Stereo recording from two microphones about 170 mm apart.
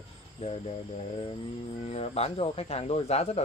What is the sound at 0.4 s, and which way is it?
Speech, 35° left (ahead or behind).